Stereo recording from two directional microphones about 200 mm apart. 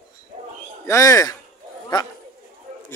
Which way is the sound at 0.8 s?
15° left (ahead or behind).